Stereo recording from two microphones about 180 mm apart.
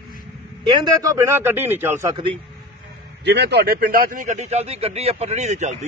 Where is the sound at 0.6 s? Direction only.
25° right (ahead or behind).